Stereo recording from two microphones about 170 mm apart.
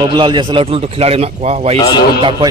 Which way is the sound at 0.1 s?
30° right (ahead or behind).